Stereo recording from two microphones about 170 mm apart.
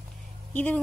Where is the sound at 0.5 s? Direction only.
10° left (ahead or behind).